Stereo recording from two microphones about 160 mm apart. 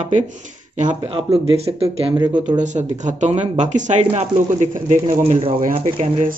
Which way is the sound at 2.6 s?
50° right (ahead or behind).